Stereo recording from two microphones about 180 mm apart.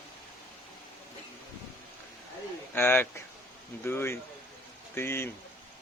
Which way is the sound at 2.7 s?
10° left (ahead or behind).